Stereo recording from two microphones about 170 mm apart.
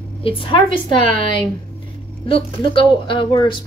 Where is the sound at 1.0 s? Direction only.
50° right (ahead or behind).